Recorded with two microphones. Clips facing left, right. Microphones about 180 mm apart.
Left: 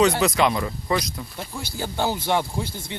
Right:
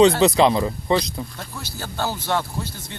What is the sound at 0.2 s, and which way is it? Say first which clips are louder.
Speech: right 4 dB; 30° right (ahead or behind).